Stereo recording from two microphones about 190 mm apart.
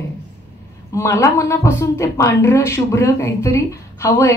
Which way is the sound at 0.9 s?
15° left (ahead or behind).